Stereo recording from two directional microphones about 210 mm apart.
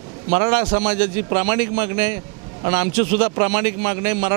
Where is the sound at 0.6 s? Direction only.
30° right (ahead or behind).